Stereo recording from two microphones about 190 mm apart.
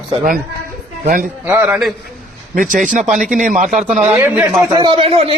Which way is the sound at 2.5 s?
45° right (ahead or behind).